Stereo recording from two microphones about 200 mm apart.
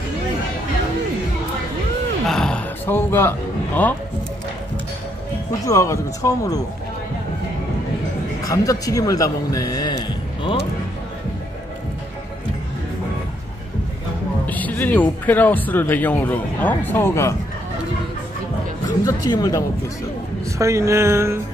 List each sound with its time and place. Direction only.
2.2 s speech: 5° left (ahead or behind)
5.7 s speech: 15° left (ahead or behind)
8.5 s a man's voice: 15° left (ahead or behind)
14.4 s speech: 10° left (ahead or behind)
19.0 s speech: 20° left (ahead or behind)
20.5 s speech: 15° right (ahead or behind)